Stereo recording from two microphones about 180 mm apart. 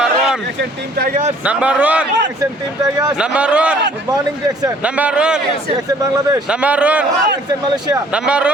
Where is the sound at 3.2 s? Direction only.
5° right (ahead or behind).